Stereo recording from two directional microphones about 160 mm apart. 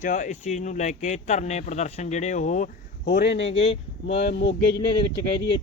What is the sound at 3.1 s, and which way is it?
Speech, 90° left.